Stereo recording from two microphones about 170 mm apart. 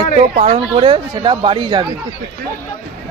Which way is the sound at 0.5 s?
35° right (ahead or behind).